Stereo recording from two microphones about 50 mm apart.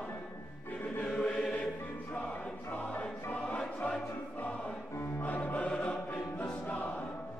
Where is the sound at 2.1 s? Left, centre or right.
Left.